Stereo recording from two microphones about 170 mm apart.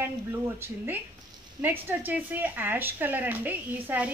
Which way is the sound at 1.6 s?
10° right (ahead or behind).